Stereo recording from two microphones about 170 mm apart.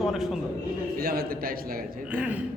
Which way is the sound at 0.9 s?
65° right (ahead or behind).